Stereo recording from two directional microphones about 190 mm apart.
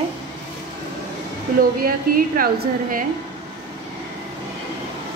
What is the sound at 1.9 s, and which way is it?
A woman's voice, 50° right (ahead or behind).